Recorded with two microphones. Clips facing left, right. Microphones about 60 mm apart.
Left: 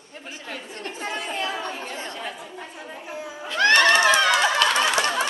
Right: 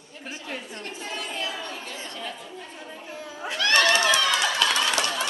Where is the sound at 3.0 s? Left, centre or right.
Centre.